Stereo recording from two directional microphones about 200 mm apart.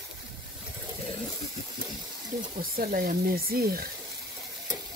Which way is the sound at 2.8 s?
45° right (ahead or behind).